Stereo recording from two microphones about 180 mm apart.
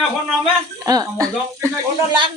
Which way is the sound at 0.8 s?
20° right (ahead or behind).